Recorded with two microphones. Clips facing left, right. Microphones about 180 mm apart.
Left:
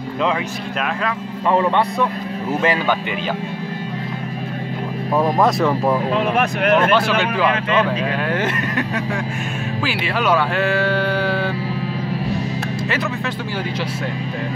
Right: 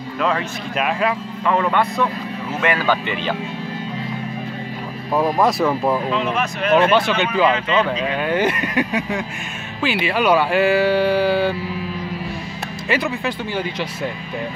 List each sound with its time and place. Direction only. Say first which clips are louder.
0.7 s speech: right 3 dB; 10° right (ahead or behind)
1.5 s a man's voice: left 2 dB; 25° left (ahead or behind)
5.4 s speech: left 1 dB; centre (ahead or behind)
6.1 s speech: left 3 dB; 60° left (ahead or behind)
6.9 s speech: even; centre (ahead or behind)